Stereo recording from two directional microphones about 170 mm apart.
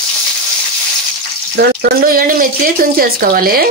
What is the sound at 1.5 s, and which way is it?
Speech, 60° right (ahead or behind).